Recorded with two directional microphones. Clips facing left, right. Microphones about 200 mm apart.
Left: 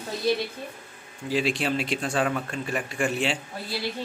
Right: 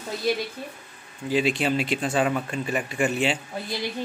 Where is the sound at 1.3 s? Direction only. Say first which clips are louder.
Right 2 dB; centre (ahead or behind).